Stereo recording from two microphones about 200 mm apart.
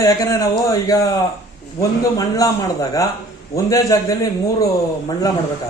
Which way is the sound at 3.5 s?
15° left (ahead or behind).